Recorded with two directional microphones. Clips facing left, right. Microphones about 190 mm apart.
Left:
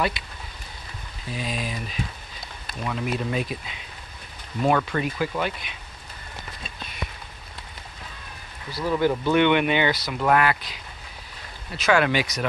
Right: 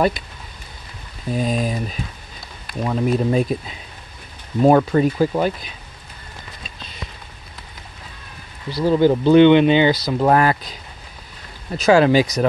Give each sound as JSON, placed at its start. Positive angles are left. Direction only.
{"t": 1.3, "sound": "speech", "side_deg": -45}
{"t": 8.6, "sound": "speech", "side_deg": -30}
{"t": 11.7, "sound": "speech", "side_deg": -35}